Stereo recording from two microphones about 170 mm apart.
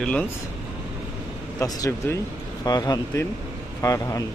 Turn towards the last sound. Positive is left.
turn(degrees=20)  # may be behind; listen again after turning